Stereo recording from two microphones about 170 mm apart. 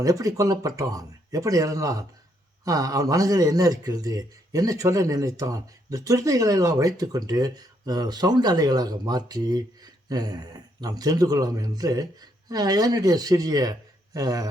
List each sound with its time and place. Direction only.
0.0 s a man's voice: 20° right (ahead or behind)